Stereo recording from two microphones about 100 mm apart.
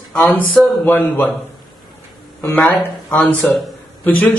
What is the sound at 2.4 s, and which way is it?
A man's voice, 20° left (ahead or behind).